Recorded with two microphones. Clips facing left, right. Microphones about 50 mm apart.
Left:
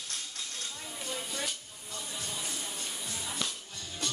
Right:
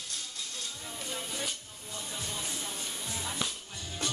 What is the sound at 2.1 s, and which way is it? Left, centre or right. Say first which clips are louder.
Music: right 1 dB; centre.